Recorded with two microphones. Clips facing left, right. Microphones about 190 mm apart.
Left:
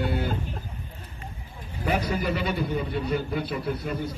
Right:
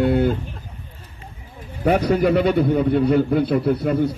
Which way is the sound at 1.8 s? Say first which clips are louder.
Right 9 dB; 65° right (ahead or behind).